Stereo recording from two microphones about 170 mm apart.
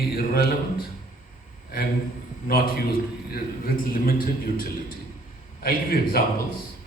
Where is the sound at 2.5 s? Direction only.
60° left (ahead or behind).